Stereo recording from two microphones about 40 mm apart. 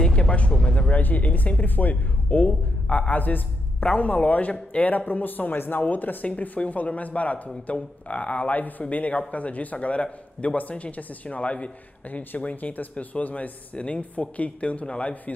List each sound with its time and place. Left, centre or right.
0.0 s music: centre
0.3 s a man's voice: left
12.1 s a man's voice: left